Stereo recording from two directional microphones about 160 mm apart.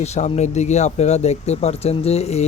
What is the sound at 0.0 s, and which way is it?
Speech, 45° left (ahead or behind).